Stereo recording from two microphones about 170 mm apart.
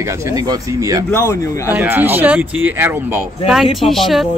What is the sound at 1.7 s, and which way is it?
Speech, 10° right (ahead or behind).